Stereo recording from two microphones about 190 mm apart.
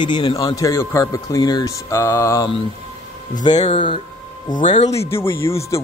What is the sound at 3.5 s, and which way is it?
Speech, 30° left (ahead or behind).